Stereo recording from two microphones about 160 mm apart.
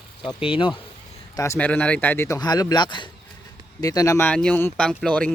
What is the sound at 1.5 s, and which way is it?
Speech, 10° left (ahead or behind).